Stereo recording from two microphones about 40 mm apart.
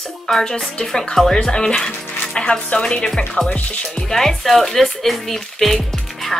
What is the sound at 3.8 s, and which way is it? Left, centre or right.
Speech, centre.